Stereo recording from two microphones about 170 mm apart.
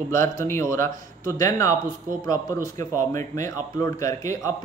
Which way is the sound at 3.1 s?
20° left (ahead or behind).